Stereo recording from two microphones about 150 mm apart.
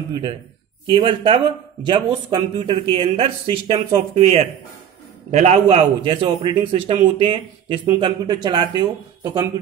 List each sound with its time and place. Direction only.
0.1 s a man's voice: 35° right (ahead or behind)